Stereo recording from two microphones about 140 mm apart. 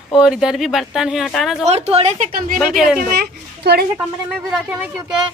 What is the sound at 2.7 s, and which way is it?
Speech, centre (ahead or behind).